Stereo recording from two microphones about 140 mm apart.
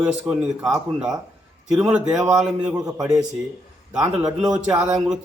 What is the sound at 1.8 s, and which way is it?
Speech, 5° right (ahead or behind).